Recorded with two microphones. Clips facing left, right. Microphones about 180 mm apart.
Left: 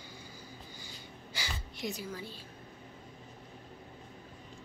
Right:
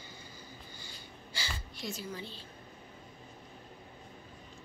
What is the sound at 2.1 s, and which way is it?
Speech, 5° left (ahead or behind).